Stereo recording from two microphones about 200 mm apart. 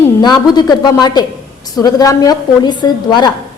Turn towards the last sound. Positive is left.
turn(degrees=20)  # may be behind; listen again after turning